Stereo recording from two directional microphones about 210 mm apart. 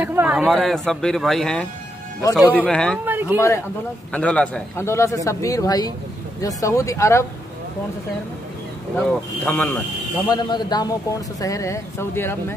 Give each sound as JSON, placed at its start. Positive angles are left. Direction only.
{"t": 0.0, "sound": "speech", "side_deg": -10}
{"t": 3.1, "sound": "a man's voice", "side_deg": -10}
{"t": 3.3, "sound": "a man's voice", "side_deg": 15}
{"t": 9.0, "sound": "a man's voice", "side_deg": 5}
{"t": 10.3, "sound": "a man's voice", "side_deg": 20}